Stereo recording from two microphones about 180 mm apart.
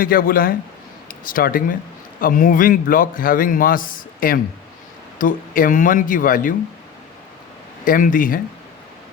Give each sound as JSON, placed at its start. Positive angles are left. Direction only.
{"t": 0.0, "sound": "a man's voice", "side_deg": 50}
{"t": 7.9, "sound": "a man's voice", "side_deg": 50}